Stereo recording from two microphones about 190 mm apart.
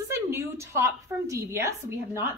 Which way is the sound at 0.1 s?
15° right (ahead or behind).